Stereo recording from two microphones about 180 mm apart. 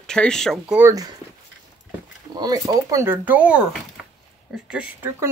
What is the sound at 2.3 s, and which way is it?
Speech, 20° right (ahead or behind).